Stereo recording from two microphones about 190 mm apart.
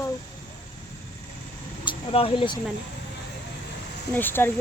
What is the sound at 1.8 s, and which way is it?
Speech, 30° left (ahead or behind).